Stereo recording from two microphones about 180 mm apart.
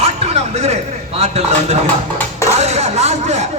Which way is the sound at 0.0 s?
35° right (ahead or behind).